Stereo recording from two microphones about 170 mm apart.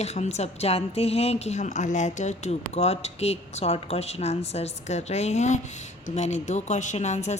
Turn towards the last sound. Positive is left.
turn(degrees=40)  # may be behind; listen again after turning